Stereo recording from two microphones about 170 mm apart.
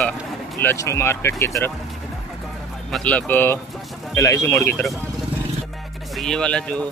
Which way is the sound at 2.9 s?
10° left (ahead or behind).